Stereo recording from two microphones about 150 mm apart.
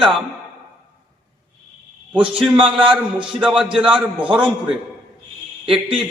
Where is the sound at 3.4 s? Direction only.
5° right (ahead or behind).